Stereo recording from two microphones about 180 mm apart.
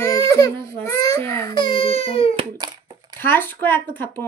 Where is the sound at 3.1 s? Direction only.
10° left (ahead or behind).